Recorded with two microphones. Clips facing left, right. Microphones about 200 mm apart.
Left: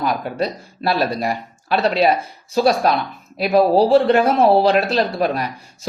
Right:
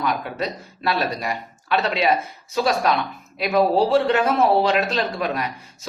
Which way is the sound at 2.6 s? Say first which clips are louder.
Left 4 dB; 35° left (ahead or behind).